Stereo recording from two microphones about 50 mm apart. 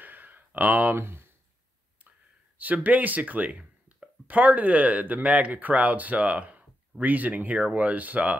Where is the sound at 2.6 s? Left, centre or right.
Right.